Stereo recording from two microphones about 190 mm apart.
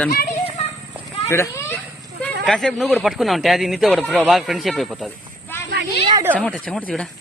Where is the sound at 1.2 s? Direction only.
15° left (ahead or behind).